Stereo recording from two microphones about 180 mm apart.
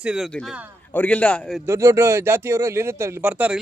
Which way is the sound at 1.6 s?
15° right (ahead or behind).